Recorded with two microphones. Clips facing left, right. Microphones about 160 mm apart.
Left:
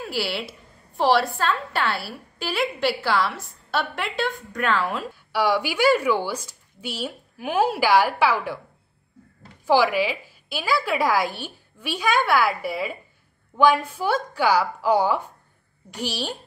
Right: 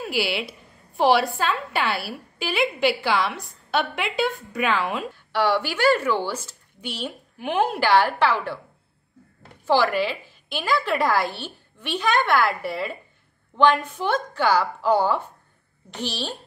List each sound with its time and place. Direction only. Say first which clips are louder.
0.0 s a woman's voice: right 2 dB; centre (ahead or behind)
5.1 s a woman's voice: even; 10° left (ahead or behind)
9.7 s a woman's voice: left 1 dB; 10° left (ahead or behind)